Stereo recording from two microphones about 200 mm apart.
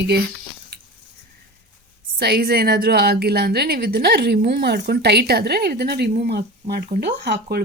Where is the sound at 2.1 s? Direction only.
50° right (ahead or behind).